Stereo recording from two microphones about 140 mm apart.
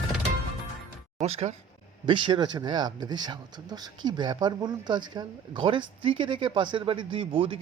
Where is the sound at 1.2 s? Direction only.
50° right (ahead or behind).